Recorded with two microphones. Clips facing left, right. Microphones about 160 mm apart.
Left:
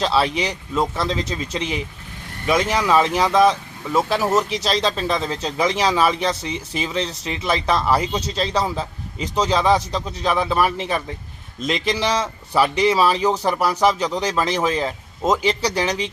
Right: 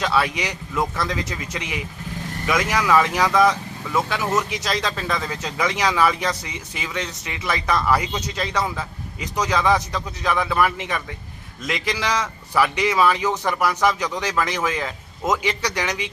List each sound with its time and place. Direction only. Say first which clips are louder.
0.0 s speech: left 2 dB; 25° left (ahead or behind)